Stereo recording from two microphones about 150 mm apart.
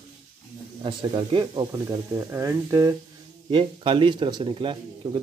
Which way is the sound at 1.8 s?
20° right (ahead or behind).